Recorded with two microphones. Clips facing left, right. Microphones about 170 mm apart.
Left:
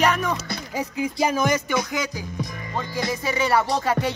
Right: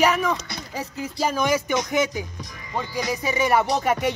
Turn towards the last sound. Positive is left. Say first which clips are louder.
# right 1 dB
turn(degrees=-20)  # may be behind; listen again after turning